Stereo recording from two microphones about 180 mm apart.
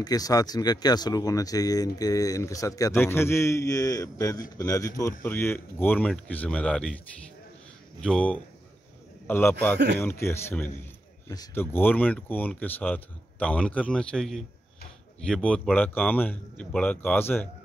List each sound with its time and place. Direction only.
0.0 s speech: 20° left (ahead or behind); by 7.0 s 5° left (ahead or behind)
8.0 s speech: 5° left (ahead or behind)